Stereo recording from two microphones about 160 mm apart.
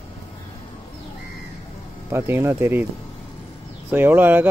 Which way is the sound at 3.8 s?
10° right (ahead or behind).